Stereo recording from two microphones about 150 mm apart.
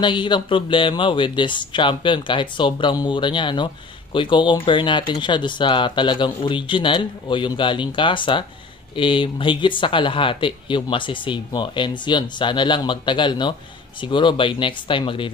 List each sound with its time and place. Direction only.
0.0 s speech: 30° left (ahead or behind)